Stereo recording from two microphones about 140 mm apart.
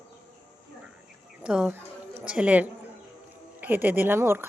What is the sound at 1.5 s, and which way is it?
A woman's voice, 5° right (ahead or behind).